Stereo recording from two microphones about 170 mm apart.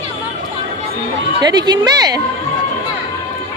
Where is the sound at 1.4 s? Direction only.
25° right (ahead or behind).